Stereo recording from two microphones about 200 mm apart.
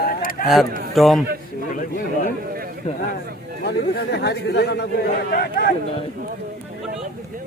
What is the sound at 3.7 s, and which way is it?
Speech, 55° left (ahead or behind).